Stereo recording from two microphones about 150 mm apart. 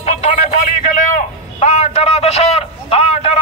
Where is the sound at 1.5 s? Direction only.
50° left (ahead or behind).